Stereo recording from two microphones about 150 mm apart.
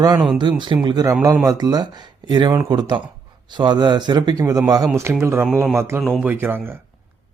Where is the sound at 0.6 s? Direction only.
30° right (ahead or behind); by 6.7 s 15° right (ahead or behind).